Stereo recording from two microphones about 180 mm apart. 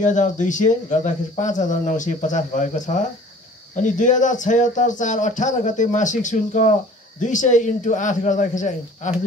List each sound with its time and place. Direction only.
0.0 s speech: 45° left (ahead or behind)